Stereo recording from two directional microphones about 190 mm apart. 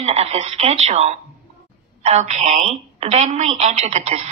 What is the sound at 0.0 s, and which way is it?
A woman's voice, 35° right (ahead or behind).